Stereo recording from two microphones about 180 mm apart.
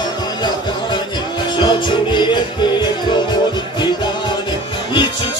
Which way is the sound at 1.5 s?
25° left (ahead or behind).